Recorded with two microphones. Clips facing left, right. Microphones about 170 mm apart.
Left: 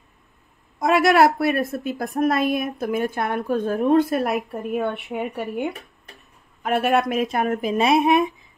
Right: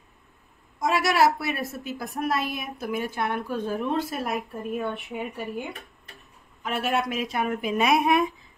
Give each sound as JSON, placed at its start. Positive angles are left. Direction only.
{"t": 0.7, "sound": "a woman's voice", "side_deg": 60}
{"t": 7.7, "sound": "speech", "side_deg": 30}